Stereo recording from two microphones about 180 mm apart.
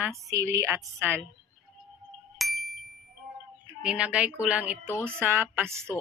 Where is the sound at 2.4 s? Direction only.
Centre (ahead or behind).